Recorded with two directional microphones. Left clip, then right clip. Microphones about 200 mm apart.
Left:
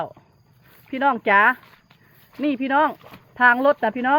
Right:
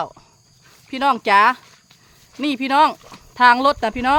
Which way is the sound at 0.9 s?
10° right (ahead or behind).